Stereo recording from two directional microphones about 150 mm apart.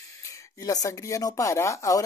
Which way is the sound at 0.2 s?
20° left (ahead or behind).